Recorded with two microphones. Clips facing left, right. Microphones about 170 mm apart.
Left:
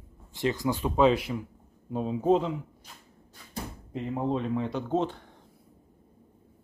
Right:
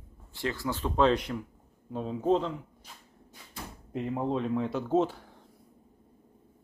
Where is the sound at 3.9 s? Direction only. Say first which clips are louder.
Left 1 dB; centre (ahead or behind).